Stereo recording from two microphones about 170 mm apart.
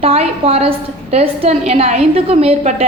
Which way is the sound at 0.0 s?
35° right (ahead or behind).